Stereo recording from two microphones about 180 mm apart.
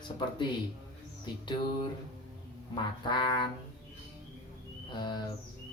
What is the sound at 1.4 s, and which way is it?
Speech, 25° left (ahead or behind).